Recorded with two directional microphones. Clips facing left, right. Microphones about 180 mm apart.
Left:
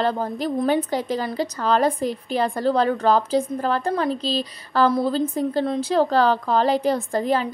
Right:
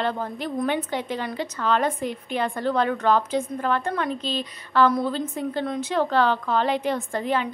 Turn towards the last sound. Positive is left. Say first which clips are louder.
# left 3 dB
turn(degrees=35)  # may be behind; listen again after turning